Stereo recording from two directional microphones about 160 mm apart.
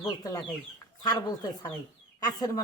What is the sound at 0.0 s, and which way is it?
Speech, 25° left (ahead or behind).